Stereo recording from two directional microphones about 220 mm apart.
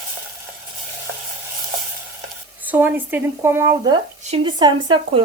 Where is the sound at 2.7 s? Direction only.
10° right (ahead or behind).